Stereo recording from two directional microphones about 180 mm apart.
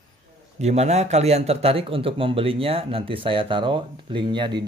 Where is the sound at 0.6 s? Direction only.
35° right (ahead or behind).